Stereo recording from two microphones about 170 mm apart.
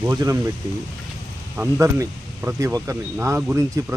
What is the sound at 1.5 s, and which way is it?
Speech, 15° right (ahead or behind).